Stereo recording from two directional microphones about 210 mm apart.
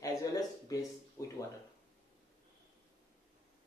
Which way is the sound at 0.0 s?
15° left (ahead or behind).